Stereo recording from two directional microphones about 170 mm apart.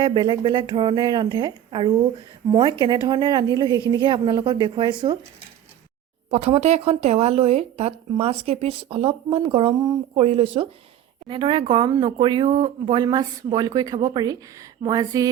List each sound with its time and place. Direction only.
0.0 s speech: 30° right (ahead or behind)
6.3 s speech: 35° right (ahead or behind); by 15.3 s 20° right (ahead or behind)